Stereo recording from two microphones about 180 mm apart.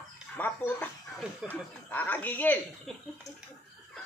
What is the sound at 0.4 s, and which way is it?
Speech, 10° left (ahead or behind).